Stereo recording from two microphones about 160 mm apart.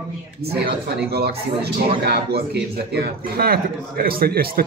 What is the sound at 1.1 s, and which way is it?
A man's voice, 85° right.